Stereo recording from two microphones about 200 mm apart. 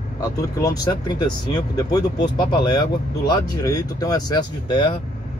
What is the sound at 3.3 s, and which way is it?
Speech, 20° left (ahead or behind).